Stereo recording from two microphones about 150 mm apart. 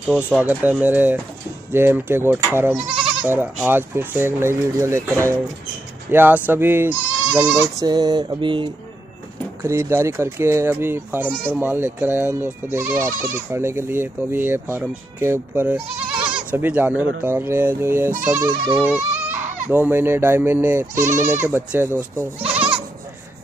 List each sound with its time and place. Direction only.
0.0 s speech: 5° right (ahead or behind)
7.7 s a sound: 25° right (ahead or behind)
9.6 s speech: 20° right (ahead or behind)